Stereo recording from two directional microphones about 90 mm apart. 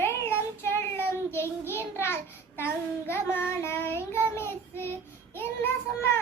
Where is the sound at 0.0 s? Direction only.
30° left (ahead or behind).